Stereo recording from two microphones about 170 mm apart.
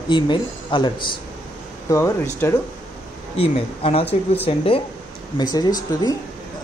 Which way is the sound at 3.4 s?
35° left (ahead or behind).